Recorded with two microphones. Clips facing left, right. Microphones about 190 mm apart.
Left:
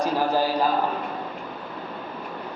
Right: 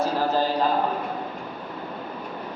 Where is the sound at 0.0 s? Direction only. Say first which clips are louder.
Even; 15° left (ahead or behind).